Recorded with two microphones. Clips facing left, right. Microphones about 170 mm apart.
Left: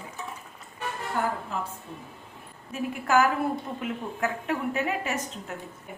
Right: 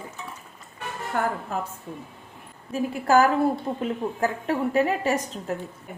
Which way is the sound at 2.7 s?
35° right (ahead or behind).